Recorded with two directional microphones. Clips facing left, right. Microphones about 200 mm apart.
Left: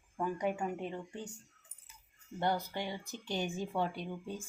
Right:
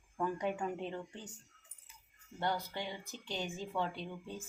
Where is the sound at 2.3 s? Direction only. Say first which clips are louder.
Left 3 dB; 15° left (ahead or behind).